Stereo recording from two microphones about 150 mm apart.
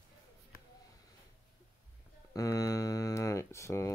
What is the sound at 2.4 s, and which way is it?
Speech, 25° left (ahead or behind).